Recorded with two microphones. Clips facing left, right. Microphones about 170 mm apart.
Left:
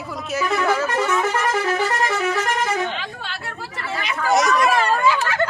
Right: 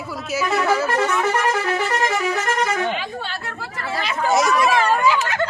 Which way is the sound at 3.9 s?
30° right (ahead or behind).